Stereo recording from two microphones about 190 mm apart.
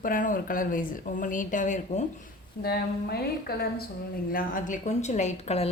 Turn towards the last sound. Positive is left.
turn(degrees=35)  # may be behind; listen again after turning